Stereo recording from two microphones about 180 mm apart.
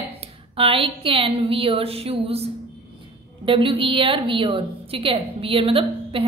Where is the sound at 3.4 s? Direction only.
30° right (ahead or behind).